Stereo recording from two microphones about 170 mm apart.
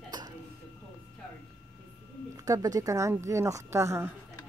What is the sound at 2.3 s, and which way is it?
Speech, 20° right (ahead or behind).